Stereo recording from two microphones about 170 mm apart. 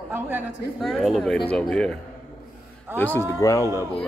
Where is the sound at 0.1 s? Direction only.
10° right (ahead or behind).